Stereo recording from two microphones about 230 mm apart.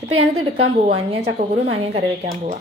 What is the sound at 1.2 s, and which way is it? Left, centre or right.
Speech, right.